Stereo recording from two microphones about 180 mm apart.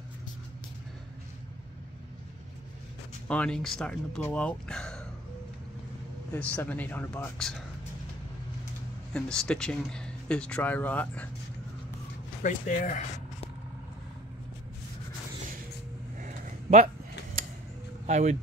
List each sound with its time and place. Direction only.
3.3 s speech: 5° left (ahead or behind)
6.3 s speech: 10° left (ahead or behind)
9.1 s speech: 5° left (ahead or behind)
12.4 s speech: 45° left (ahead or behind)
16.2 s a sound: 45° right (ahead or behind)
18.0 s speech: 40° right (ahead or behind)